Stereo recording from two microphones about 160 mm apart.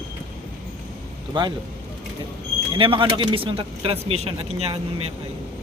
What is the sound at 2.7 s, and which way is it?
Speech, 35° right (ahead or behind).